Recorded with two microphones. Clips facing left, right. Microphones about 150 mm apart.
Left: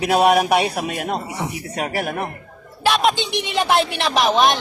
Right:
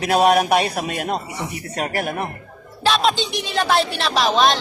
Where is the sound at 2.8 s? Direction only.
15° left (ahead or behind).